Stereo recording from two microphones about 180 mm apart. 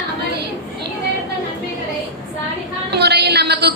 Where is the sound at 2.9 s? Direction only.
65° right (ahead or behind).